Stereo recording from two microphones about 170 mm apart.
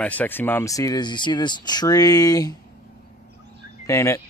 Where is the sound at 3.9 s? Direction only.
15° left (ahead or behind).